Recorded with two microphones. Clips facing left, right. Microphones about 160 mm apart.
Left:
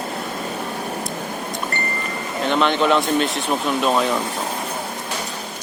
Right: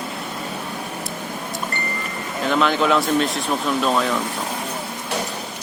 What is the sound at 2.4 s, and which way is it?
Speech, 5° right (ahead or behind).